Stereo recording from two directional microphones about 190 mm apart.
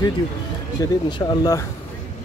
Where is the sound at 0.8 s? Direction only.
20° left (ahead or behind).